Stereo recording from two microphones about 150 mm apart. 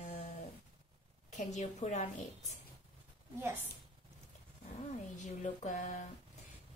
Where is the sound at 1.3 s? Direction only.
50° left (ahead or behind).